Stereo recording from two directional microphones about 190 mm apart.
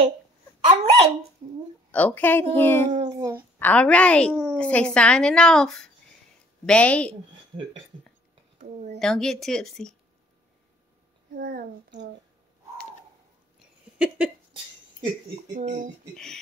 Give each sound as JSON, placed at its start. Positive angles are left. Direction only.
{"t": 0.7, "sound": "speech", "side_deg": -30}
{"t": 1.9, "sound": "a woman's voice", "side_deg": 10}
{"t": 2.9, "sound": "child singing", "side_deg": -20}
{"t": 3.5, "sound": "a woman's voice", "side_deg": 10}
{"t": 8.5, "sound": "a sound", "side_deg": -40}
{"t": 9.0, "sound": "a woman's voice", "side_deg": 5}
{"t": 11.3, "sound": "a child's voice", "side_deg": -50}
{"t": 13.6, "sound": "a sound", "side_deg": -5}
{"t": 15.5, "sound": "speech", "side_deg": -40}